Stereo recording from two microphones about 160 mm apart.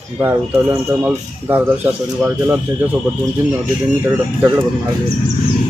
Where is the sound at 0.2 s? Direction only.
10° right (ahead or behind).